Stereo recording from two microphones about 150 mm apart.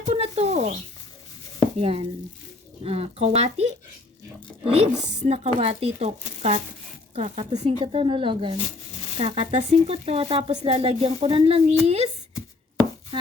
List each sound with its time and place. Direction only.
0.0 s a sound: 40° right (ahead or behind)
1.8 s speech: 40° right (ahead or behind)
7.8 s speech: 35° right (ahead or behind)